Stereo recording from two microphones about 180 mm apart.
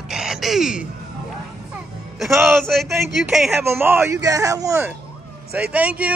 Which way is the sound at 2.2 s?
Centre (ahead or behind).